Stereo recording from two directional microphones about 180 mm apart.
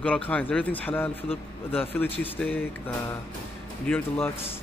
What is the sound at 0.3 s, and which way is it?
A man's voice, 10° left (ahead or behind).